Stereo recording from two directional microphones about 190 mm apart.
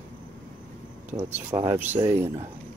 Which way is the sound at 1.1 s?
15° right (ahead or behind).